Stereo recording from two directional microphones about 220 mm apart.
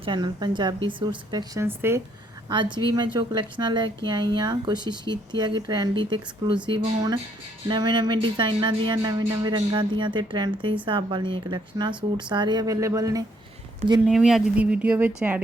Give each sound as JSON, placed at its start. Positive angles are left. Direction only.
{"t": 0.0, "sound": "a woman's voice", "side_deg": -20}
{"t": 2.5, "sound": "a woman's voice", "side_deg": -20}
{"t": 14.1, "sound": "speech", "side_deg": 0}